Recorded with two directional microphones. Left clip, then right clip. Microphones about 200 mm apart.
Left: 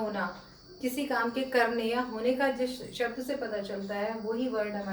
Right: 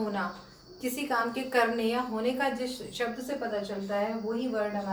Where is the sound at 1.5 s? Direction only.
15° right (ahead or behind).